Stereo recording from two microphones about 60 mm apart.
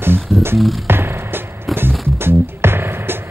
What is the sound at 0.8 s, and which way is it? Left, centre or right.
Music, right.